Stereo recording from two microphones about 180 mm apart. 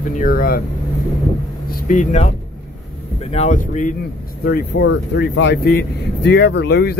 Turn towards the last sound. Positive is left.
turn(degrees=60)  # may be behind; listen again after turning